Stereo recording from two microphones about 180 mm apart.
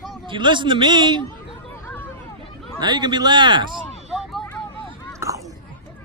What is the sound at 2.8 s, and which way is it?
Speech, 25° right (ahead or behind).